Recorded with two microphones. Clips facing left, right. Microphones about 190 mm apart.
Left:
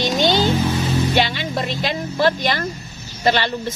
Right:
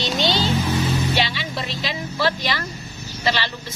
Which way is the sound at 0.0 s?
50° left (ahead or behind).